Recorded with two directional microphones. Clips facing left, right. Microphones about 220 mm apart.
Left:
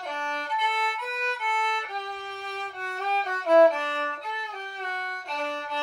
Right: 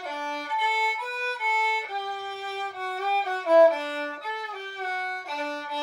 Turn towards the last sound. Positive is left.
turn(degrees=-5)  # may be behind; listen again after turning